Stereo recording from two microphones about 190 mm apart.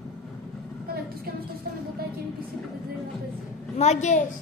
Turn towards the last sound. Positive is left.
turn(degrees=35)  # may be behind; listen again after turning